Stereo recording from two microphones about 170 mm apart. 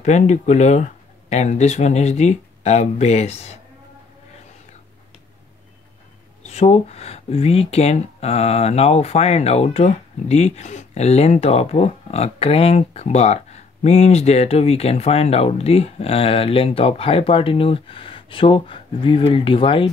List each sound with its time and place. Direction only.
0.0 s speech: 45° left (ahead or behind)
6.4 s speech: 40° left (ahead or behind)